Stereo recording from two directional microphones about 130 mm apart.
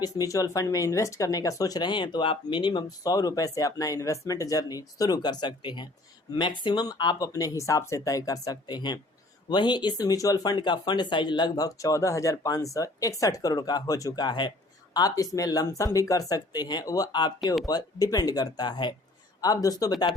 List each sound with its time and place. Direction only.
0.0 s speech: 25° left (ahead or behind)